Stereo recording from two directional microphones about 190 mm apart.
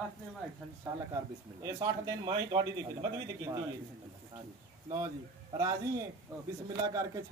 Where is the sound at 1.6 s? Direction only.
20° right (ahead or behind).